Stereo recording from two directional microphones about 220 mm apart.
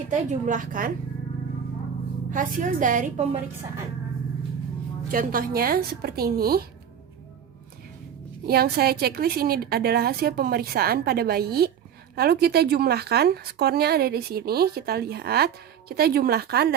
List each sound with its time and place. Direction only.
0.1 s a woman's voice: 35° right (ahead or behind)
2.3 s a woman's voice: 40° right (ahead or behind)
5.1 s speech: 40° right (ahead or behind)
8.4 s speech: 45° right (ahead or behind)